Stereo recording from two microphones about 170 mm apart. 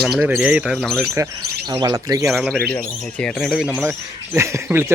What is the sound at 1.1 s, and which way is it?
Speech, 20° right (ahead or behind).